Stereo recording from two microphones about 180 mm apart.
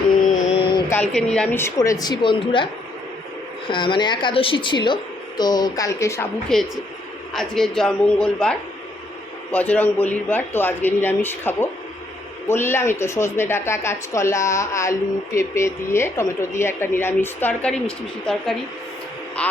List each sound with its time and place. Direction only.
0.9 s a woman's voice: 5° left (ahead or behind); by 2.6 s 25° left (ahead or behind)
3.7 s speech: 25° left (ahead or behind)
6.5 s a woman's voice: 5° left (ahead or behind)